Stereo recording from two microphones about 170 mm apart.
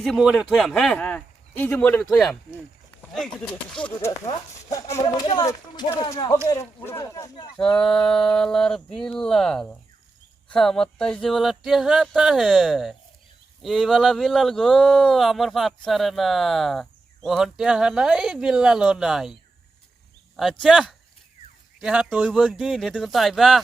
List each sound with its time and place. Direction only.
0.0 s speech: centre (ahead or behind)
4.3 s speech: 20° left (ahead or behind)
6.7 s speech: 15° left (ahead or behind)
7.5 s speech: 5° left (ahead or behind)